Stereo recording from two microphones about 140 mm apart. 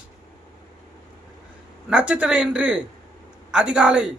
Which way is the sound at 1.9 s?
5° right (ahead or behind).